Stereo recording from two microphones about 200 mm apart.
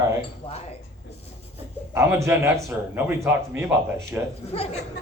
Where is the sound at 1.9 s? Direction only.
15° right (ahead or behind).